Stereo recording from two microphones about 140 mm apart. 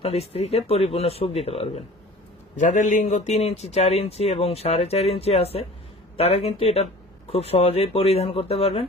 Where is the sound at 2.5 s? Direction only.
60° left (ahead or behind).